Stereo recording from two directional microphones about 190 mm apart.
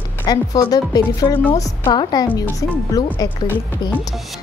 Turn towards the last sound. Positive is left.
turn(degrees=20)  # may be behind; listen again after turning